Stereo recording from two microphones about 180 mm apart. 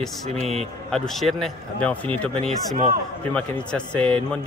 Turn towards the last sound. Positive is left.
turn(degrees=5)  # may be behind; listen again after turning